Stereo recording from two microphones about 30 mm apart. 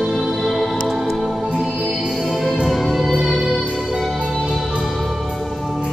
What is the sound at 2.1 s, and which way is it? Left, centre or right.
Music, centre.